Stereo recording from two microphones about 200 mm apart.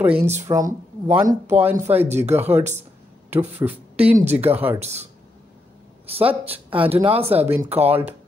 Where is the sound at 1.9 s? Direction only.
30° right (ahead or behind).